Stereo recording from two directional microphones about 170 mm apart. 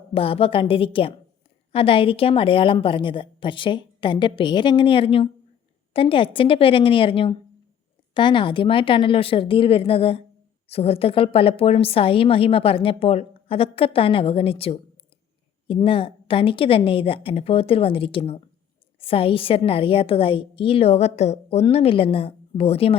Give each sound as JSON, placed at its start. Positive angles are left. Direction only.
{"t": 0.1, "sound": "a woman's voice", "side_deg": 35}